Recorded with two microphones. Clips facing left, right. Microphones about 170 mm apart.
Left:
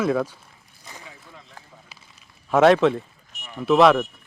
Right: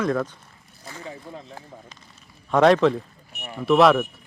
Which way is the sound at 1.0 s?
35° right (ahead or behind).